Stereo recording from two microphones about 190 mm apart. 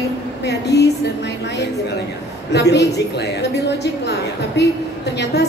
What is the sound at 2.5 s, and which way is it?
A woman's voice, 65° left (ahead or behind).